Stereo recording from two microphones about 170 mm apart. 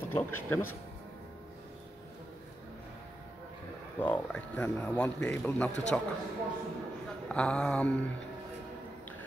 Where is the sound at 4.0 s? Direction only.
5° left (ahead or behind).